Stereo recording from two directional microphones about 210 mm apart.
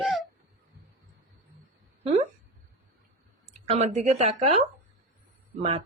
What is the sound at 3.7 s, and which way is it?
Speech, 30° right (ahead or behind).